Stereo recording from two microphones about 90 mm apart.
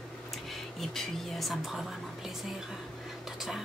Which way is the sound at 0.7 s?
Centre (ahead or behind).